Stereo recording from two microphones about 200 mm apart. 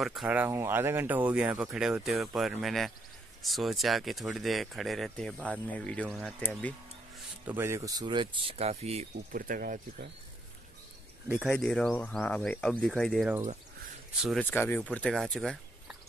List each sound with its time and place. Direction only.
0.0 s speech: centre (ahead or behind)
7.4 s speech: 10° right (ahead or behind); by 9.0 s 30° right (ahead or behind)
9.3 s speech: 45° right (ahead or behind)
11.2 s speech: 10° right (ahead or behind)
11.5 s speech: 5° left (ahead or behind)